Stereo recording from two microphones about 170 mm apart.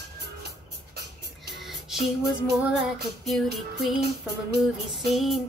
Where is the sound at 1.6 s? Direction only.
Centre (ahead or behind).